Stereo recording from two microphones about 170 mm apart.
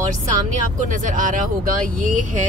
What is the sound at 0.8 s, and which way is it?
Speech, 50° right (ahead or behind).